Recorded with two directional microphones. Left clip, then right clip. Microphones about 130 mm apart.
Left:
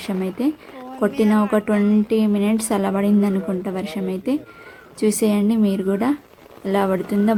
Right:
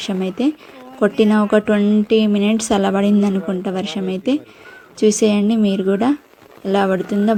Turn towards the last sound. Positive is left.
turn(degrees=-10)  # may be behind; listen again after turning